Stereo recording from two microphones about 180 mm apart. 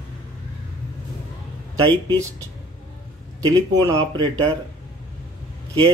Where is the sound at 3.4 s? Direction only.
20° right (ahead or behind).